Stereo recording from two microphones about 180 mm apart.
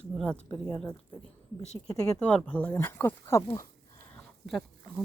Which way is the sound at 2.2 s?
5° left (ahead or behind).